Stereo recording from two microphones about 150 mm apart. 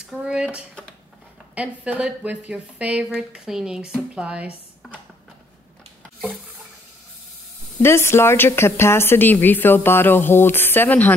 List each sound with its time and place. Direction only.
0.0 s a sound: 5° right (ahead or behind)
1.5 s speech: 10° right (ahead or behind)
7.8 s speech: 15° left (ahead or behind)